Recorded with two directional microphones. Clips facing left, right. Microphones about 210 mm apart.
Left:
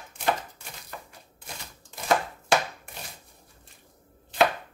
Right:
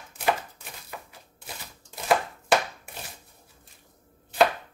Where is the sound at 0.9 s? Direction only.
5° right (ahead or behind).